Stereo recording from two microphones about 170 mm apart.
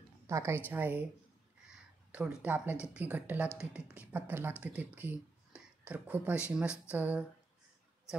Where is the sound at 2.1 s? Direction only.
10° right (ahead or behind).